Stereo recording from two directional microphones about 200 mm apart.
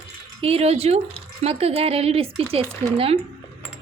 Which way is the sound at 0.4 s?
30° right (ahead or behind).